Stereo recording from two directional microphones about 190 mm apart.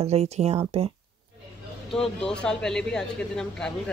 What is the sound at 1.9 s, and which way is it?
Speech, 5° left (ahead or behind).